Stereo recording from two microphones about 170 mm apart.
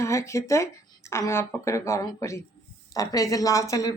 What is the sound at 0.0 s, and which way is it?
Speech, 15° left (ahead or behind).